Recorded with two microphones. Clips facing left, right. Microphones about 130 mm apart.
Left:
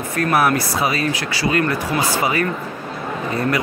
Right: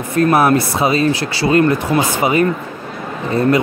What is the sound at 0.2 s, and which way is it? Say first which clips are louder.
Speech: right 5 dB; 25° right (ahead or behind).